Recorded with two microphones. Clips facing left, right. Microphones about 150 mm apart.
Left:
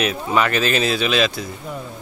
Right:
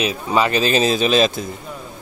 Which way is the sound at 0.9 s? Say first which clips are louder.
Right 3 dB; 40° right (ahead or behind).